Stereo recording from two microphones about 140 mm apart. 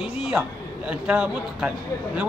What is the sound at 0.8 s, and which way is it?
Speech, 5° right (ahead or behind).